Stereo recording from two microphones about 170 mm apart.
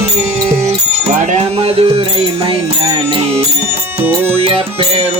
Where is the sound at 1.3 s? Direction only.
35° right (ahead or behind).